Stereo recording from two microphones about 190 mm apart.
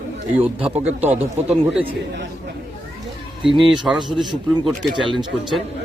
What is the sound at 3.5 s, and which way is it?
Speech, 25° right (ahead or behind).